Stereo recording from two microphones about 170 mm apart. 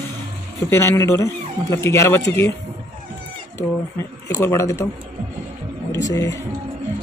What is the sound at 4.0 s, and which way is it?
Speech, 15° left (ahead or behind).